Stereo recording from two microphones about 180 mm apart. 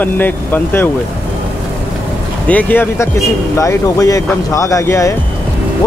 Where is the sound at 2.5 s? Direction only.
10° left (ahead or behind).